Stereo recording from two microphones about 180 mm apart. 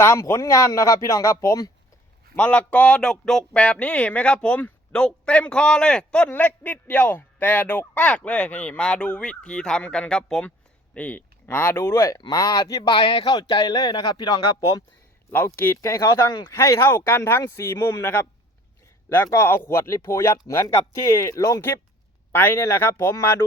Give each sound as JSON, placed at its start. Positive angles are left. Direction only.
{"t": 0.0, "sound": "speech", "side_deg": 15}
{"t": 2.3, "sound": "speech", "side_deg": 5}